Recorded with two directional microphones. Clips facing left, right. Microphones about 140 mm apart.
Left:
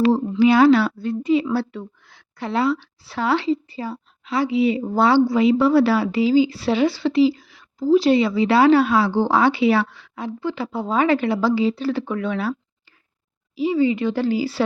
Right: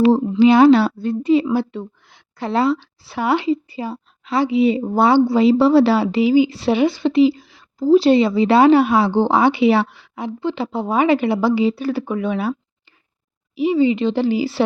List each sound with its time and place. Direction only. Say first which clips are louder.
0.3 s speech: right 3 dB; 20° right (ahead or behind)
1.7 s a sound: right 4 dB; 25° right (ahead or behind)
2.5 s speech: right 3 dB; 30° right (ahead or behind)
3.1 s speech: right 2 dB; 15° right (ahead or behind)
6.2 s speech: right 2 dB; 15° right (ahead or behind)
13.6 s speech: right 3 dB; 20° right (ahead or behind)